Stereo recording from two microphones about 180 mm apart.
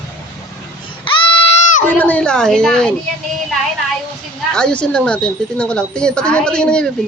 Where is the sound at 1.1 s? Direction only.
30° left (ahead or behind).